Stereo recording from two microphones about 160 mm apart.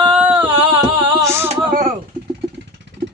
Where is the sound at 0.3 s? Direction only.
35° right (ahead or behind).